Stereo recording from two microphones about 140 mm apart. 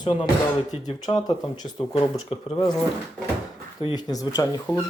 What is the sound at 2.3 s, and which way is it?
Speech, 45° left (ahead or behind).